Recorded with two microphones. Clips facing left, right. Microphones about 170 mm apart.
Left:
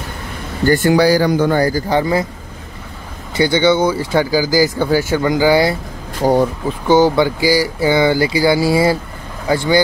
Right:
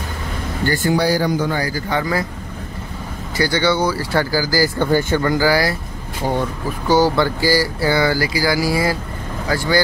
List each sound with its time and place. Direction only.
0.8 s a man's voice: 90° left; by 1.5 s 75° left (ahead or behind)
1.5 s speech: 45° left (ahead or behind); by 2.2 s 25° left (ahead or behind)
3.3 s speech: 20° left (ahead or behind)
6.2 s speech: 40° left (ahead or behind)
6.9 s speech: 20° left (ahead or behind)